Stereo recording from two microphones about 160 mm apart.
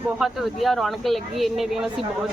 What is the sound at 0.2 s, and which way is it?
Speech, centre (ahead or behind).